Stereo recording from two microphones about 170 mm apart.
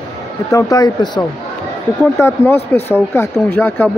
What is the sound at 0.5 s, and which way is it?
Speech, 20° left (ahead or behind).